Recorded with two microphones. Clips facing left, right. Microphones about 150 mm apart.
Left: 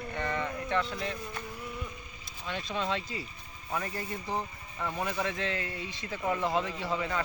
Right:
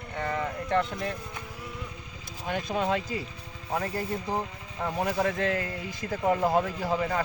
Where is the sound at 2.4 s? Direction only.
45° right (ahead or behind).